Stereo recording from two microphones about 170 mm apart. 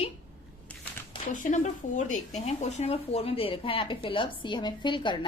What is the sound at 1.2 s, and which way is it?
Speech, 50° left (ahead or behind).